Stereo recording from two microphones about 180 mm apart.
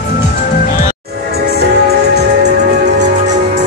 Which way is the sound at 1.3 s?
60° right (ahead or behind).